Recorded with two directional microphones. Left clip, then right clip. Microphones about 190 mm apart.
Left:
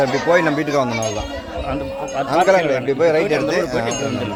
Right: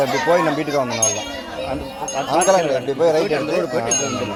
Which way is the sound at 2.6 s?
30° left (ahead or behind).